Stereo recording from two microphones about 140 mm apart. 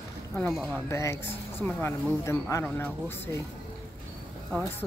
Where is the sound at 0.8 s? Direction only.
20° left (ahead or behind).